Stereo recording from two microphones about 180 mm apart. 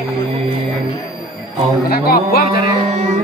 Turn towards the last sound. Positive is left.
turn(degrees=60)  # may be behind; listen again after turning